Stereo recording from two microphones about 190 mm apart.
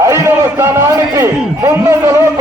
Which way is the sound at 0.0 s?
15° right (ahead or behind).